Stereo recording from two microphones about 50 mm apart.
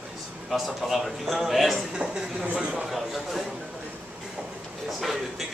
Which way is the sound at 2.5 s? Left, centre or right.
Centre.